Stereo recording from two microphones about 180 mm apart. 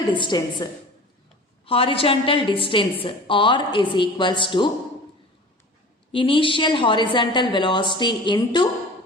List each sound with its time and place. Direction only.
0.2 s a woman's voice: 25° left (ahead or behind)
6.1 s a woman's voice: 30° left (ahead or behind)